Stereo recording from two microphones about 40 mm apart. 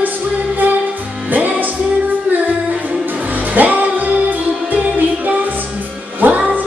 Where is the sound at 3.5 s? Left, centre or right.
Right.